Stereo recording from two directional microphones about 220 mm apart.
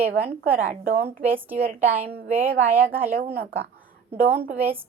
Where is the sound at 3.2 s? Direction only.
45° right (ahead or behind).